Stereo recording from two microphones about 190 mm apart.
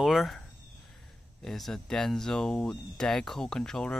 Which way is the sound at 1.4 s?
Centre (ahead or behind).